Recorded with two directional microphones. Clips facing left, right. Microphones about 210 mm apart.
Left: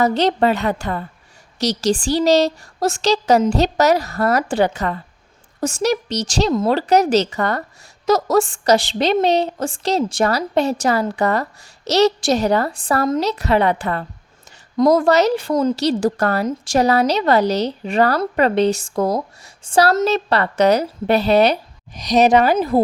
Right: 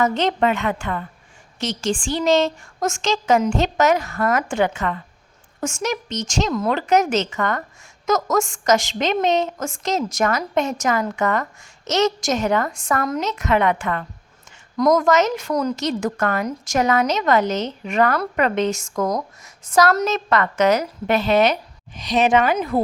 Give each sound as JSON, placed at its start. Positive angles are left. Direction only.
{"t": 0.0, "sound": "a woman's voice", "side_deg": 35}